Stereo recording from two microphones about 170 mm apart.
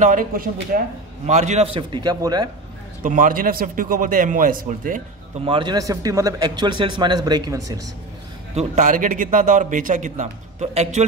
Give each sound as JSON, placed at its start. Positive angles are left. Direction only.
{"t": 0.0, "sound": "a man's voice", "side_deg": -50}
{"t": 1.2, "sound": "speech", "side_deg": -40}
{"t": 3.0, "sound": "a man's voice", "side_deg": -50}
{"t": 5.4, "sound": "speech", "side_deg": -30}
{"t": 8.5, "sound": "a man's voice", "side_deg": -45}